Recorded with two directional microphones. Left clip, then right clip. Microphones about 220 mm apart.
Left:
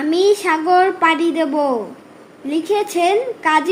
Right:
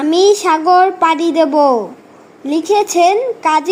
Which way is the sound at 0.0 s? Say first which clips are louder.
Right 4 dB; 25° right (ahead or behind).